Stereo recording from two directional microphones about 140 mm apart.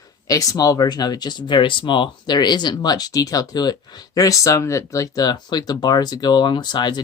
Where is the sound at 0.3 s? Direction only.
25° left (ahead or behind).